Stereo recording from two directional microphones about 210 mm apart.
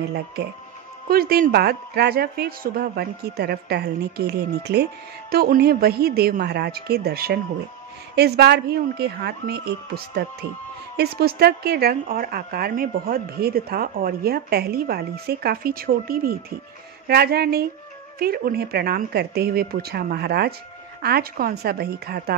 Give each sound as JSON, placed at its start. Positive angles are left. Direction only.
{"t": 1.0, "sound": "a woman's voice", "side_deg": -45}